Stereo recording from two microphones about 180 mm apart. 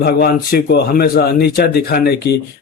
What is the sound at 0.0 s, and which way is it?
Speech, 55° left (ahead or behind).